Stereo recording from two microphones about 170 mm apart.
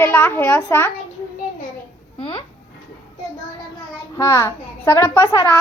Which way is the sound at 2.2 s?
30° left (ahead or behind).